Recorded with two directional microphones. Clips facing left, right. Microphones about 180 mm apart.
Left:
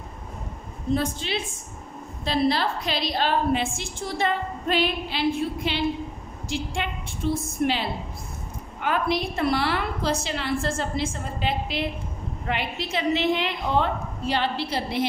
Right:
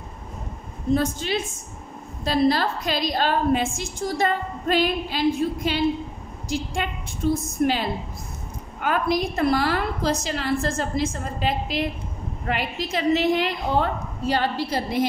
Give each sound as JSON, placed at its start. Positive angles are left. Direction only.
{"t": 0.9, "sound": "a woman's voice", "side_deg": -45}